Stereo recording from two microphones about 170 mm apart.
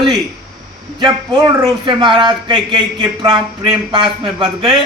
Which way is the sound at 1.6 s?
30° right (ahead or behind).